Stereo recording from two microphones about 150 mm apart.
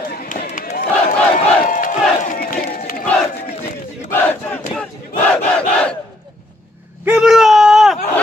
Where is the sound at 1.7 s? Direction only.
65° left (ahead or behind); by 2.8 s 80° left.